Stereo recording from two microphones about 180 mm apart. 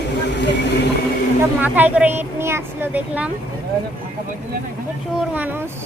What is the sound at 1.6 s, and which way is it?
A child's voice, 10° right (ahead or behind).